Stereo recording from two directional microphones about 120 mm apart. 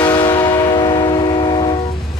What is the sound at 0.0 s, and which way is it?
Train, 35° left (ahead or behind).